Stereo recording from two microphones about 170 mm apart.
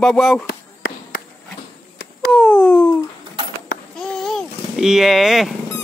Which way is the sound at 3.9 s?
5° left (ahead or behind).